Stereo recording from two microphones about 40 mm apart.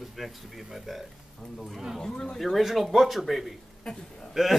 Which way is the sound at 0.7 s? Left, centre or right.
Centre.